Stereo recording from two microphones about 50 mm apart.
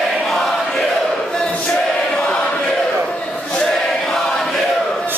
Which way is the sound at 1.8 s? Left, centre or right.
Centre.